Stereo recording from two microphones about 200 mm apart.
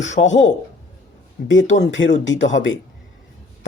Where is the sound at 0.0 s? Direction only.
65° left (ahead or behind).